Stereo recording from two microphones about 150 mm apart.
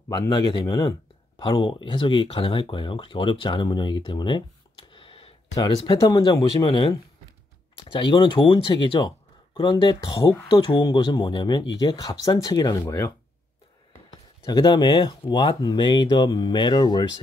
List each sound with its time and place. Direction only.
0.7 s speech: 30° left (ahead or behind)
14.4 s speech: 30° left (ahead or behind)